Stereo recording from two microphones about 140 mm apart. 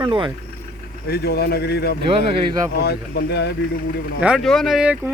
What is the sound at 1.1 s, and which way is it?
Speech, 90° left.